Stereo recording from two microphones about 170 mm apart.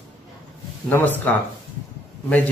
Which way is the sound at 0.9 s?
10° left (ahead or behind).